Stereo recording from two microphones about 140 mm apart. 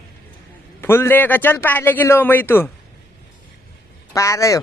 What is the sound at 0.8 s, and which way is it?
A man's voice, 15° left (ahead or behind).